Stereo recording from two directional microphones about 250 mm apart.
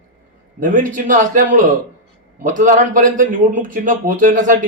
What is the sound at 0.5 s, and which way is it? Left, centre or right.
A man's voice, right.